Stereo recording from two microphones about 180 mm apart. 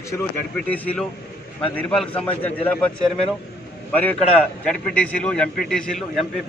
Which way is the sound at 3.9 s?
10° left (ahead or behind).